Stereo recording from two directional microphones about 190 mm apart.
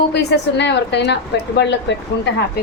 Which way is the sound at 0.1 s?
65° left (ahead or behind).